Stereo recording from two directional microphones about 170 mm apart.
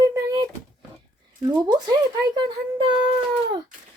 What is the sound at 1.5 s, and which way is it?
Speech, 25° right (ahead or behind).